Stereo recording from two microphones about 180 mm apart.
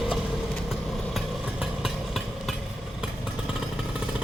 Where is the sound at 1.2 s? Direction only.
Centre (ahead or behind).